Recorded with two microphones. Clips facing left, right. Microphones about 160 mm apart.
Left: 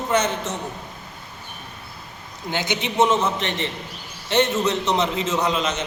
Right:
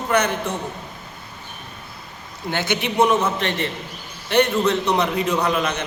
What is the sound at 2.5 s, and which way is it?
A man's voice, 15° left (ahead or behind).